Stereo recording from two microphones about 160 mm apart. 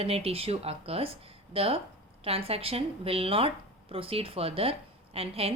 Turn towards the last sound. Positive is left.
turn(degrees=-35)  # may be behind; listen again after turning